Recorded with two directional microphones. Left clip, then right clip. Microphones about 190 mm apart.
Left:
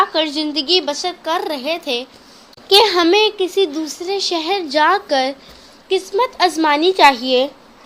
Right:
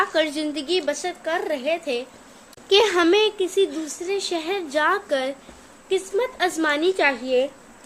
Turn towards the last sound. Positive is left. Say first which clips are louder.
# left 8 dB
turn(degrees=35)  # may be behind; listen again after turning